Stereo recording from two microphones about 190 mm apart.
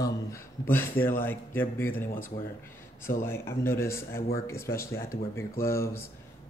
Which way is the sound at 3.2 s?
15° left (ahead or behind).